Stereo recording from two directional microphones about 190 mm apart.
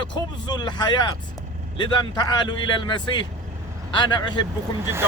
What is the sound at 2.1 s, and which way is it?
Speech, 20° left (ahead or behind).